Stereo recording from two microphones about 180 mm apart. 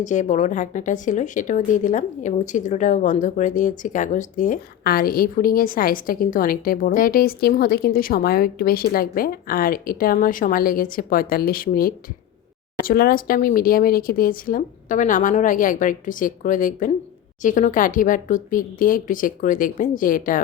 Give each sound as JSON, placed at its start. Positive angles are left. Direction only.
{"t": 0.0, "sound": "a woman's voice", "side_deg": 45}